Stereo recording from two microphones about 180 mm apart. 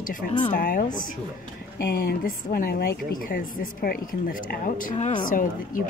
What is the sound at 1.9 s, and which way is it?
A woman's voice, 55° left (ahead or behind).